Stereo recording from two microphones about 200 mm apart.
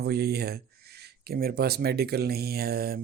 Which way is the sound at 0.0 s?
55° right (ahead or behind).